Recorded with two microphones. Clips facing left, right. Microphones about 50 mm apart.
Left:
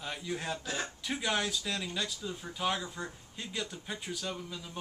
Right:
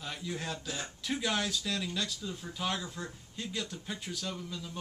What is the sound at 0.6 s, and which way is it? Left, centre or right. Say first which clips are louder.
Speech: left 3 dB; left.